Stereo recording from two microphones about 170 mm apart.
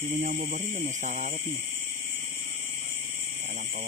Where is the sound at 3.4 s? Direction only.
50° right (ahead or behind).